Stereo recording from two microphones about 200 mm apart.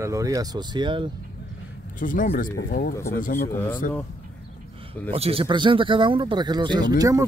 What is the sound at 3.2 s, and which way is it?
Speech, 45° left (ahead or behind).